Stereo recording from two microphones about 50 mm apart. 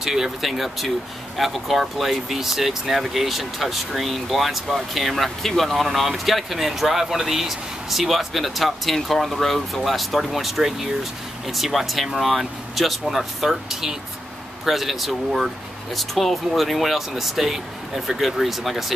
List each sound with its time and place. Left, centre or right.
0.0 s speech: centre